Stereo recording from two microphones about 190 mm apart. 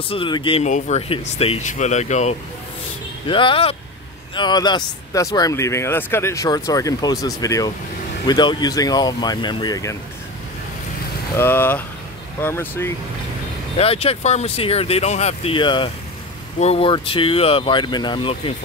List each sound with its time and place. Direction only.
0.1 s speech: 25° left (ahead or behind)
3.3 s speech: 25° left (ahead or behind)
11.3 s speech: 10° left (ahead or behind)
13.7 s speech: 30° left (ahead or behind)